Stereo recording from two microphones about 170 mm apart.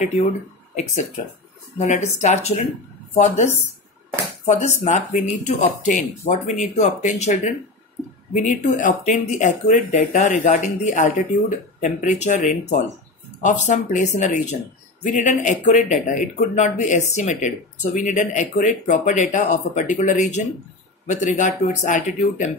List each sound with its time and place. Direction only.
1.8 s speech: 45° left (ahead or behind)
4.5 s speech: 45° left (ahead or behind)